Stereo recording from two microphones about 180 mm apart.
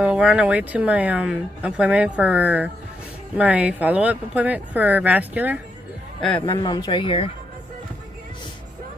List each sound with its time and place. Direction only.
0.0 s speech: 5° right (ahead or behind)
6.5 s speech: 25° left (ahead or behind)